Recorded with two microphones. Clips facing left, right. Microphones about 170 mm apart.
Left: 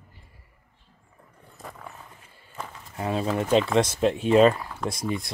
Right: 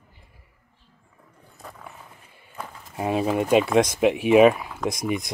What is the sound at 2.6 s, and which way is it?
Speech, 15° right (ahead or behind).